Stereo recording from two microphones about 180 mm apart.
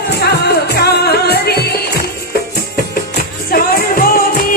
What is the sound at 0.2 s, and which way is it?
Music, 60° left (ahead or behind).